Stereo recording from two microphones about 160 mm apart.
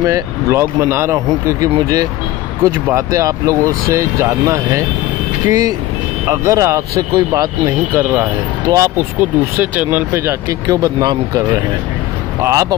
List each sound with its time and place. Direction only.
0.0 s speech: 20° right (ahead or behind)
6.2 s speech: 20° right (ahead or behind)